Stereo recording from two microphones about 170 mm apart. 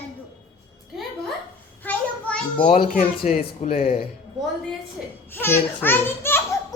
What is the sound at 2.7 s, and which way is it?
Speech, 40° left (ahead or behind).